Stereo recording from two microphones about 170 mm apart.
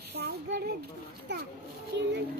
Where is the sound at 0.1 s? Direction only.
80° right.